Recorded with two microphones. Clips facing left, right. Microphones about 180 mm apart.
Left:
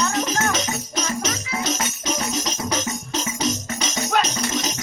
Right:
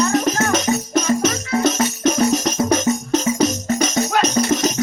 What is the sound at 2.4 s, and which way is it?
Music, 50° right (ahead or behind).